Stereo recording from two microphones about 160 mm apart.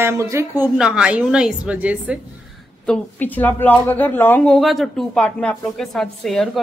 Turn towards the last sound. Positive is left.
turn(degrees=0)  # may be behind; listen again after turning